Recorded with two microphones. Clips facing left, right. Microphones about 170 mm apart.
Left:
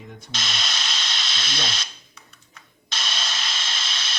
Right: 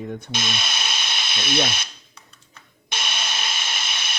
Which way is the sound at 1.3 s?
55° right (ahead or behind).